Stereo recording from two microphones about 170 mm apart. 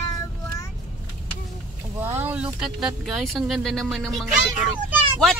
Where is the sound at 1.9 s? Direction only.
10° right (ahead or behind).